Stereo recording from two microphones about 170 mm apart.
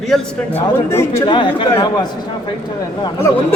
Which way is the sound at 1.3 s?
30° left (ahead or behind).